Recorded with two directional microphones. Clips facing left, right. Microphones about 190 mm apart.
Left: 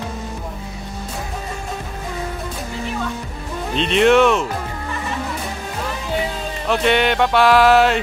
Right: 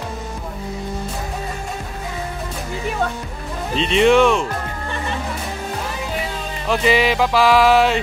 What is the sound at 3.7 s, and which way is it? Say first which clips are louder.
Speech: even; centre (ahead or behind).